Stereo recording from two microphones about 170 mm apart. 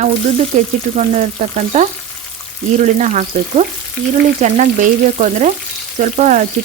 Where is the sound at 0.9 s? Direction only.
40° right (ahead or behind).